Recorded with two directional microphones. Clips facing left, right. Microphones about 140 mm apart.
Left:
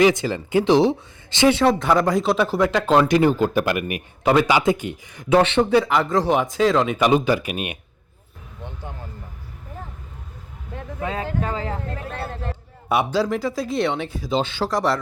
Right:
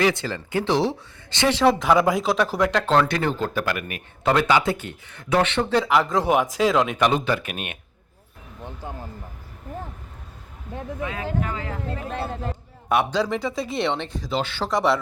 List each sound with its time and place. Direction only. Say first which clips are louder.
0.0 s speech: left 5 dB; 15° left (ahead or behind)
1.5 s speech: left 1 dB; centre (ahead or behind)
5.4 s speech: left 4 dB; 25° left (ahead or behind)
5.7 s speech: right 1 dB; centre (ahead or behind)
11.0 s speech: left 3 dB; 30° left (ahead or behind)
11.9 s speech: right 2 dB; 15° right (ahead or behind)
12.9 s speech: left 1 dB; 10° left (ahead or behind)
14.3 s speech: left 4 dB; 20° left (ahead or behind)
14.6 s speech: right 3 dB; centre (ahead or behind)